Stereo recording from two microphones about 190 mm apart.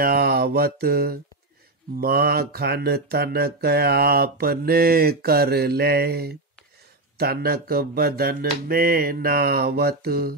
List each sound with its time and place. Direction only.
0.0 s mantra: 50° right (ahead or behind)
2.0 s speech: 55° right (ahead or behind)
8.6 s mantra: 50° right (ahead or behind)